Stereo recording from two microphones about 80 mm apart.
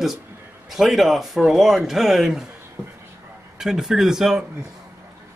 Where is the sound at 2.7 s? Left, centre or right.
Right.